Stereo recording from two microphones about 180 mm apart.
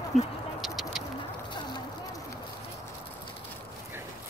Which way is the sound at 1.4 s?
25° left (ahead or behind).